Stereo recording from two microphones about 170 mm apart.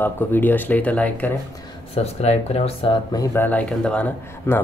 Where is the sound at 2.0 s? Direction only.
40° left (ahead or behind).